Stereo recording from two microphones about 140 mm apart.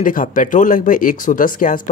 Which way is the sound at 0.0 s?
70° left (ahead or behind).